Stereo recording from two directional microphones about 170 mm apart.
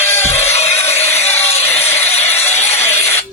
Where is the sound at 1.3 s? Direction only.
40° left (ahead or behind).